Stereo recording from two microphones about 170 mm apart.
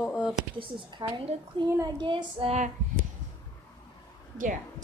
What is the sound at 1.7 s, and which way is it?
Child singing, 25° right (ahead or behind).